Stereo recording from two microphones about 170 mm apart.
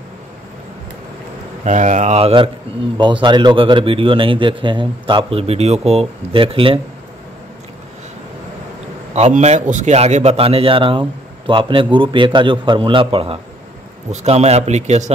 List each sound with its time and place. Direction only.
1.6 s a man's voice: 45° right (ahead or behind)
9.1 s a man's voice: 40° right (ahead or behind)